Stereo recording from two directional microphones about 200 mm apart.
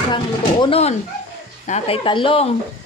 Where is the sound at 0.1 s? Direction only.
25° left (ahead or behind).